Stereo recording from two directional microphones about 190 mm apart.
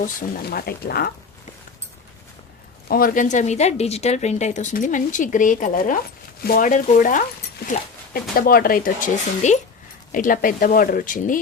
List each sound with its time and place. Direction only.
0.0 s speech: 50° left (ahead or behind)
2.9 s a woman's voice: 50° left (ahead or behind)